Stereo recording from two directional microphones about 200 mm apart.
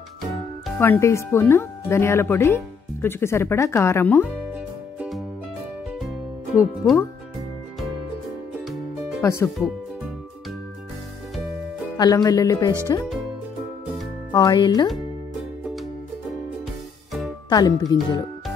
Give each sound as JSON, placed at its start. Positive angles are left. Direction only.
{"t": 0.7, "sound": "speech", "side_deg": 10}
{"t": 4.9, "sound": "music", "side_deg": -5}
{"t": 6.5, "sound": "speech", "side_deg": 15}
{"t": 9.2, "sound": "speech", "side_deg": 15}
{"t": 12.0, "sound": "speech", "side_deg": 20}
{"t": 14.3, "sound": "speech", "side_deg": 20}
{"t": 17.5, "sound": "speech", "side_deg": 20}